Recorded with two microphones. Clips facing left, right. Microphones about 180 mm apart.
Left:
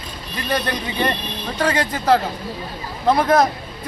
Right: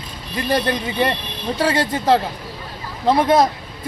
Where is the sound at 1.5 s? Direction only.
25° right (ahead or behind).